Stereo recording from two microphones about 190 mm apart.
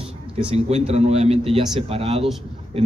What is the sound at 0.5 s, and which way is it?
A man's voice, 35° right (ahead or behind).